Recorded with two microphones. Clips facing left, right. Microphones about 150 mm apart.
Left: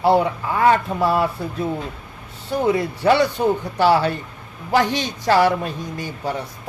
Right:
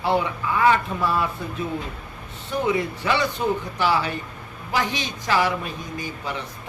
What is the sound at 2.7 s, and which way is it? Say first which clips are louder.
A woman's voice: left 7 dB; 45° left (ahead or behind).